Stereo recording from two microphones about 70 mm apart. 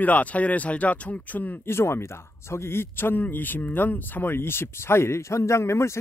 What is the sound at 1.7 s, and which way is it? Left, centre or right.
Speech, left.